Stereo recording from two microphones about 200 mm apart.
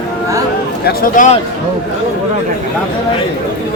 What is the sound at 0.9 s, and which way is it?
Speech, 40° left (ahead or behind).